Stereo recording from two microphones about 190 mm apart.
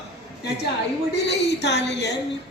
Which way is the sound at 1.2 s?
60° left (ahead or behind).